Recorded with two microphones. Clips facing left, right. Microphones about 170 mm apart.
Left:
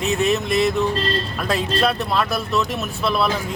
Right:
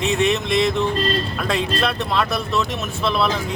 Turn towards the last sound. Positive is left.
turn(degrees=5)  # may be behind; listen again after turning